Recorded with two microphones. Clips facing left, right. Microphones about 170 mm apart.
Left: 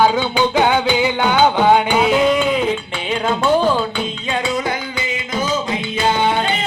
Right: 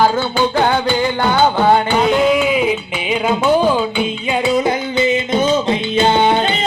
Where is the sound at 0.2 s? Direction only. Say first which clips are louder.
Even; 10° left (ahead or behind).